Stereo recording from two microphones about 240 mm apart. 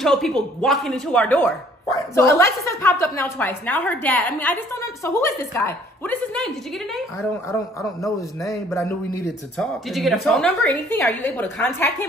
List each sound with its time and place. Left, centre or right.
0.0 s speech: centre
9.2 s speech: centre